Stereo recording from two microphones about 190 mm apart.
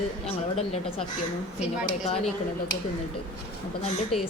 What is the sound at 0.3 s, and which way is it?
Speech, 30° left (ahead or behind).